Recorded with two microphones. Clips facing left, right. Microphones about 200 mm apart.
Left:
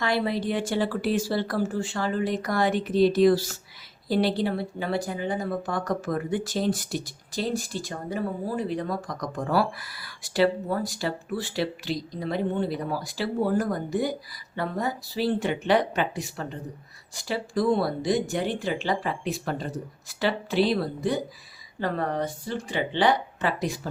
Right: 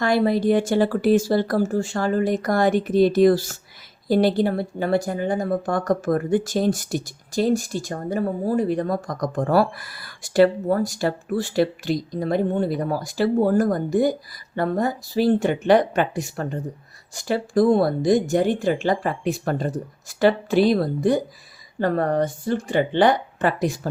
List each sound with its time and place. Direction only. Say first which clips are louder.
0.0 s speech: right 7 dB; 45° right (ahead or behind)